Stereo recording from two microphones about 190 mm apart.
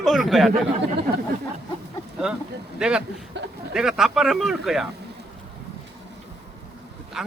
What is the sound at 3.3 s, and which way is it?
Speech, 70° right (ahead or behind).